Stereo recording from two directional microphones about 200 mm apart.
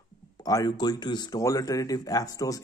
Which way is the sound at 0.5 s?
20° left (ahead or behind).